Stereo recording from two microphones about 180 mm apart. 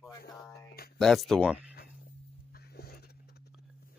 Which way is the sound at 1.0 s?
Centre (ahead or behind).